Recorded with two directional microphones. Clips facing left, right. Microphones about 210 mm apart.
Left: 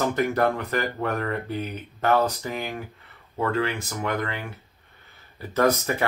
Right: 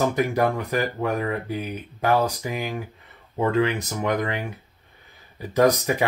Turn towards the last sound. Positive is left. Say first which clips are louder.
# right 3 dB
turn(degrees=-15)  # may be behind; listen again after turning